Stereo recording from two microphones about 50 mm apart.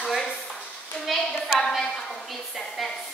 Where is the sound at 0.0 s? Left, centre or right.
Centre.